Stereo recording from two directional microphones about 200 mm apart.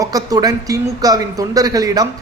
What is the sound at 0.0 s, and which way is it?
A man's voice, 15° right (ahead or behind).